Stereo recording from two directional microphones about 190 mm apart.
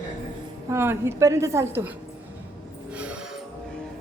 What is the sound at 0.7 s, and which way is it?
Speech, 15° right (ahead or behind).